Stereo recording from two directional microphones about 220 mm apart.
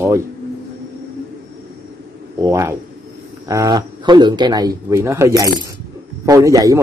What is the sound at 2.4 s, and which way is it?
A man's voice, 15° right (ahead or behind).